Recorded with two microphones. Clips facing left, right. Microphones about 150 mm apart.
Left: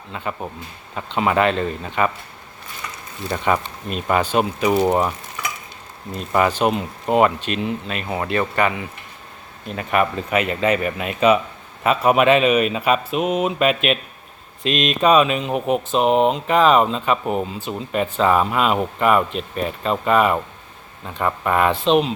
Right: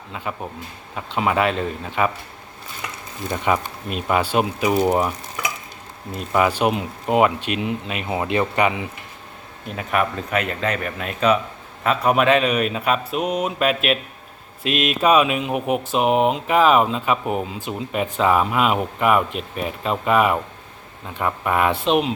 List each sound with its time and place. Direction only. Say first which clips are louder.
0.1 s speech: left 1 dB; centre (ahead or behind)
3.2 s speech: left 1 dB; 10° right (ahead or behind)
6.1 s speech: left 1 dB; 5° right (ahead or behind)
9.7 s speech: left 2 dB; centre (ahead or behind)